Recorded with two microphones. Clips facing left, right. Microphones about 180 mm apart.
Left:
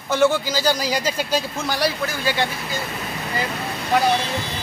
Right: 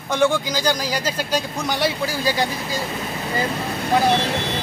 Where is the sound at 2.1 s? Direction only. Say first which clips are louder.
Right 2 dB; 40° right (ahead or behind).